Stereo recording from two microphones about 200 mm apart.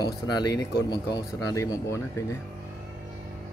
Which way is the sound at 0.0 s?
20° left (ahead or behind).